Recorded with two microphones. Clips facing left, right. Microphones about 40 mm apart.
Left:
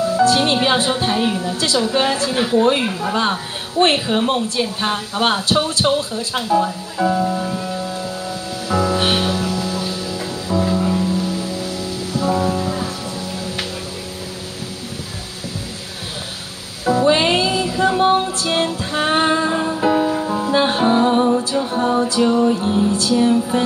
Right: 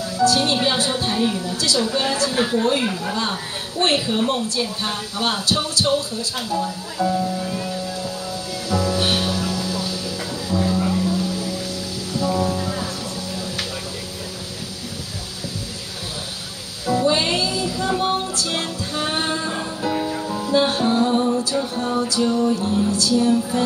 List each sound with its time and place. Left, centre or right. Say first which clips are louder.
0.1 s a woman's voice: left 1 dB; left
3.8 s speech: left 3 dB; left
8.6 s music: left 3 dB; left
16.8 s music: left 4 dB; left